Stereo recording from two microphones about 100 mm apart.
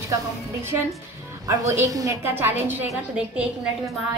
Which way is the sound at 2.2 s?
20° right (ahead or behind).